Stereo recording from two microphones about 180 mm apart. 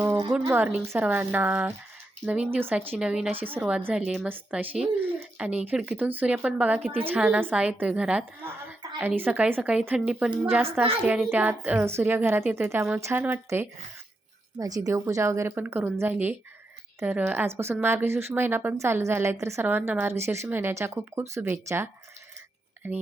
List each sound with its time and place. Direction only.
0.0 s a sound: 15° right (ahead or behind)
0.4 s a woman's voice: 10° right (ahead or behind)
22.8 s a woman's voice: 10° right (ahead or behind)